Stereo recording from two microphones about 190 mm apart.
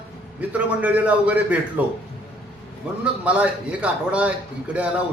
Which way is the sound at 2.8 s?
5° right (ahead or behind).